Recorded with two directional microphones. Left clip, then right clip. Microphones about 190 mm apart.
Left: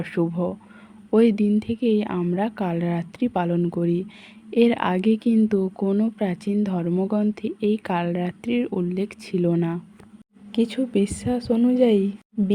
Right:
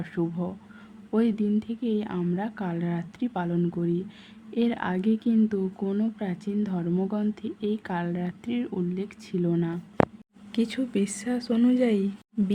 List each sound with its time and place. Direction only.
0.0 s speech: 30° left (ahead or behind)